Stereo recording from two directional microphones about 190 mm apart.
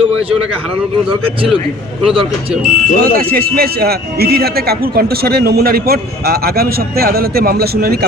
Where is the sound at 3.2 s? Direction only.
55° right (ahead or behind).